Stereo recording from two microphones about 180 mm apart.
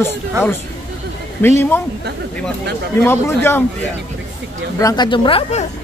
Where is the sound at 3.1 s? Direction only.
10° left (ahead or behind).